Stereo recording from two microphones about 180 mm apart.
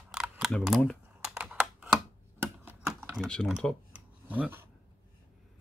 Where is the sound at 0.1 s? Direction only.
Centre (ahead or behind).